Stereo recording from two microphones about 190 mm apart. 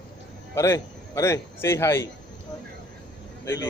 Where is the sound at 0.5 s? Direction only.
15° left (ahead or behind).